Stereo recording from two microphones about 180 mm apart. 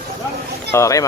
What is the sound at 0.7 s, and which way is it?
Speech, 15° left (ahead or behind).